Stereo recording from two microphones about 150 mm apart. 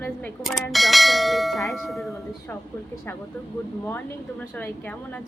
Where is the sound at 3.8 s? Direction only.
10° left (ahead or behind).